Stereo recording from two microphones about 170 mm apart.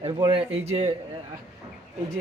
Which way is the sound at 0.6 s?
40° right (ahead or behind).